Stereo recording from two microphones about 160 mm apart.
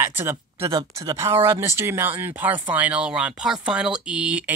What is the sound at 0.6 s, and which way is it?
Speech, 25° right (ahead or behind).